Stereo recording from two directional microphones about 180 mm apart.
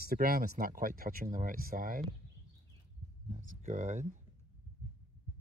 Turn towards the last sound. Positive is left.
turn(degrees=-45)  # may be behind; listen again after turning